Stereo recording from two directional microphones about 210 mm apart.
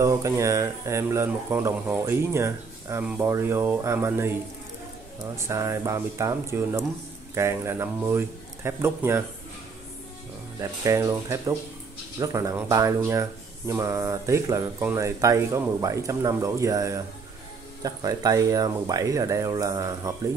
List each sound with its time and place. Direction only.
0.0 s speech: 15° right (ahead or behind)
5.5 s speech: 15° right (ahead or behind)
10.6 s speech: 15° right (ahead or behind)